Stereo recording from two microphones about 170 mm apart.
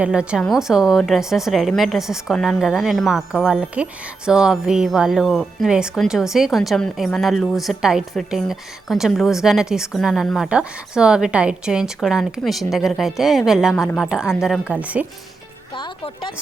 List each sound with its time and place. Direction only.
0.0 s speech: 5° right (ahead or behind)
15.7 s speech: 30° left (ahead or behind)